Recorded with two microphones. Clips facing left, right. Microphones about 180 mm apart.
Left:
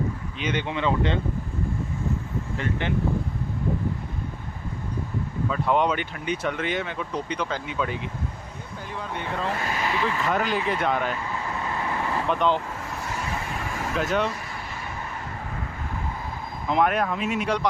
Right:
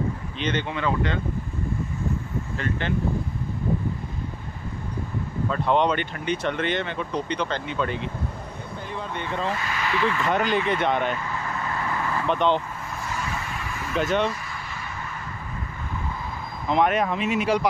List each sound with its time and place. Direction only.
0.4 s speech: 10° left (ahead or behind)
2.5 s speech: 15° left (ahead or behind)
5.5 s speech: 5° left (ahead or behind)
9.6 s speech: 40° left (ahead or behind)
10.0 s speech: 5° left (ahead or behind)
12.3 s speech: 5° left (ahead or behind)
13.9 s speech: 5° left (ahead or behind)
16.7 s speech: centre (ahead or behind)